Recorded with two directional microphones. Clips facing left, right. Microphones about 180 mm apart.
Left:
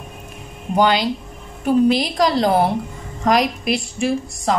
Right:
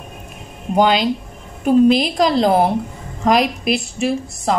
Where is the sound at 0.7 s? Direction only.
20° right (ahead or behind).